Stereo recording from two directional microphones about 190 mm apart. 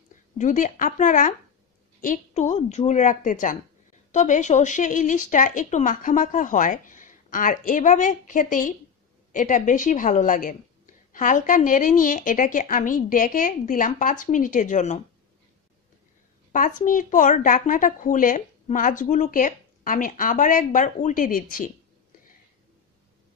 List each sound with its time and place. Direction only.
0.4 s a woman's voice: 40° left (ahead or behind)
16.5 s a woman's voice: 45° left (ahead or behind)